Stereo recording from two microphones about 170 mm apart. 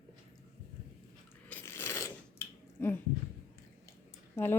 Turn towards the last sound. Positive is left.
turn(degrees=15)  # may be behind; listen again after turning